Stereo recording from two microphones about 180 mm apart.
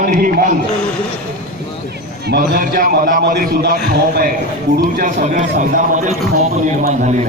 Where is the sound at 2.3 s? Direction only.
60° right (ahead or behind).